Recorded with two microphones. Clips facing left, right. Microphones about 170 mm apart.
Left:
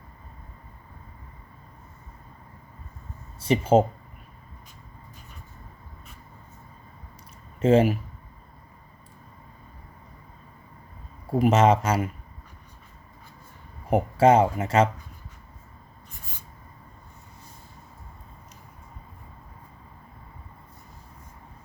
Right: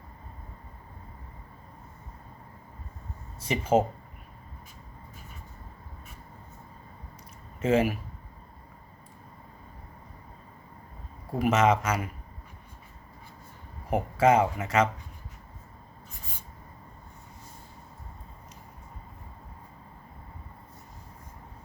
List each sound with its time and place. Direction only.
3.4 s speech: 30° left (ahead or behind)
7.6 s speech: 30° left (ahead or behind)
11.3 s speech: 30° left (ahead or behind)
13.9 s speech: 30° left (ahead or behind)